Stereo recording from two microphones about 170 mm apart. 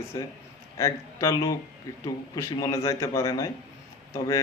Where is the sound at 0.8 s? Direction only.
20° left (ahead or behind).